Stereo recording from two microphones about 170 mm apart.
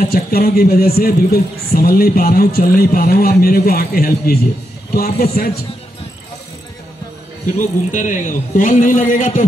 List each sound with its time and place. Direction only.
0.0 s speech: 60° left (ahead or behind)
7.5 s a man's voice: 50° left (ahead or behind)